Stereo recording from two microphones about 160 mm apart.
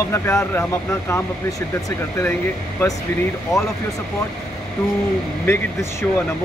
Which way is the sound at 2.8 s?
15° left (ahead or behind).